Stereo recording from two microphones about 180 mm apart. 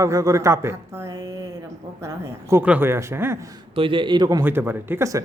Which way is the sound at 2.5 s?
10° right (ahead or behind).